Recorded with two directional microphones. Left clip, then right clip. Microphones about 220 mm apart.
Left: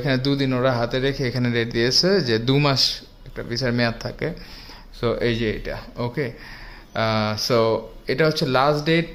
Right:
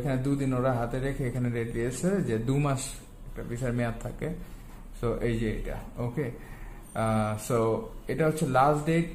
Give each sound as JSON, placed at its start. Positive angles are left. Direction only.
{"t": 0.0, "sound": "a man's voice", "side_deg": 50}